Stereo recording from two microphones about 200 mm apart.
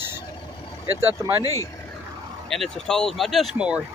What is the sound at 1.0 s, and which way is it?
Speech, 15° right (ahead or behind).